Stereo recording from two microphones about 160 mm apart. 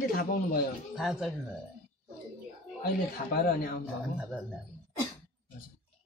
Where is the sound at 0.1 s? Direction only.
70° left (ahead or behind).